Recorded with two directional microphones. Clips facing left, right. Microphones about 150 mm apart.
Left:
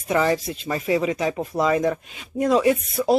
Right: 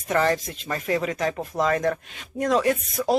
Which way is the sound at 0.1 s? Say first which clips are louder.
Left 2 dB; 10° left (ahead or behind).